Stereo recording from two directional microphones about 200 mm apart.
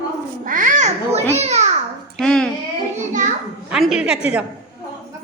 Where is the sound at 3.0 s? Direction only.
40° right (ahead or behind).